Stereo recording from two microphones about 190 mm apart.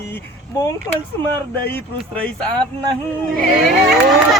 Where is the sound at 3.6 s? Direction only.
Centre (ahead or behind).